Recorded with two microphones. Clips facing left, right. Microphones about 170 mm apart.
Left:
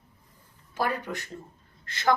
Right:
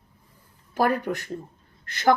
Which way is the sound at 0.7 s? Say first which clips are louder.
Right 6 dB; 45° right (ahead or behind).